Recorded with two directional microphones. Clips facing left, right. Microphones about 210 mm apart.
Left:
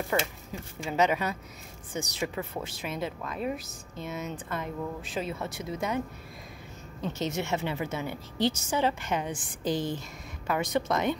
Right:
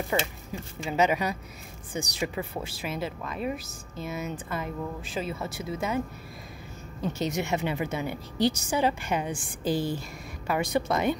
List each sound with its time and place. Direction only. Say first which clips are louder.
0.1 s a woman's voice: even; 15° right (ahead or behind)